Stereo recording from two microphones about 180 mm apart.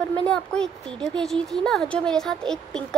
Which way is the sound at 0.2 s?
5° left (ahead or behind).